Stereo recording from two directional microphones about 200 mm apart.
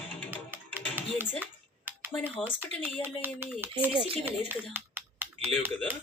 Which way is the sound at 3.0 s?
10° right (ahead or behind).